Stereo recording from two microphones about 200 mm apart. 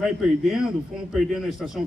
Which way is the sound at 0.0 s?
Centre (ahead or behind).